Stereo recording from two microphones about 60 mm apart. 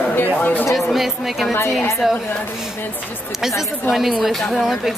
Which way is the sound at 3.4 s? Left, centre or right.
Centre.